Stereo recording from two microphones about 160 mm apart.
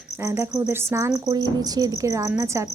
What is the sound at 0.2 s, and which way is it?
Cricket, 15° right (ahead or behind).